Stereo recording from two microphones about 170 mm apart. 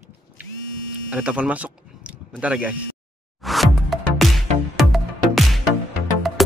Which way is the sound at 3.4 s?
Centre (ahead or behind).